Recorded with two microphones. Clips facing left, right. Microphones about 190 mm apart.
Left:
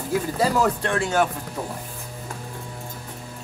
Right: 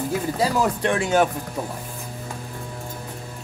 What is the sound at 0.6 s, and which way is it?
Speech, 15° right (ahead or behind).